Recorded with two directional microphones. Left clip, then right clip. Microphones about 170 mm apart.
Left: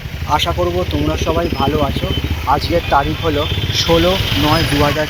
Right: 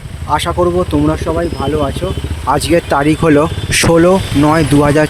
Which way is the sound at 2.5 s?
55° right (ahead or behind).